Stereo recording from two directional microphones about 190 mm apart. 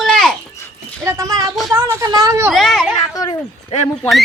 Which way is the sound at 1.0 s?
15° right (ahead or behind).